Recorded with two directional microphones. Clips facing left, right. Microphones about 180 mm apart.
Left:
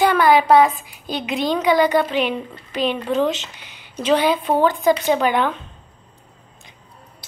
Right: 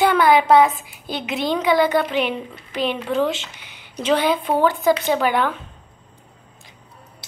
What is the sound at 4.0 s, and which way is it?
Speech, 15° left (ahead or behind).